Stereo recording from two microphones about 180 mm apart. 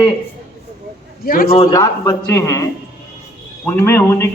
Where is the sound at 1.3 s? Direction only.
55° left (ahead or behind).